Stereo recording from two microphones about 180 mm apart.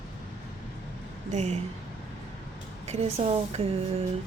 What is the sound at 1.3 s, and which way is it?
Speech, 35° right (ahead or behind).